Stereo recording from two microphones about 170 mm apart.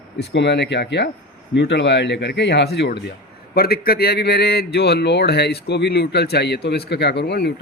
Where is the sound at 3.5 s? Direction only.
65° left (ahead or behind).